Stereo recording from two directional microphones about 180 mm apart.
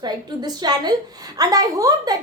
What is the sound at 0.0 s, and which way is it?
A woman's voice, 25° right (ahead or behind).